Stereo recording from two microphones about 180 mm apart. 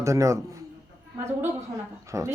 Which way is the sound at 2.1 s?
20° right (ahead or behind).